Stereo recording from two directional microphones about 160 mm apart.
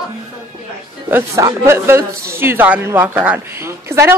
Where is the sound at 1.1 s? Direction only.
15° right (ahead or behind).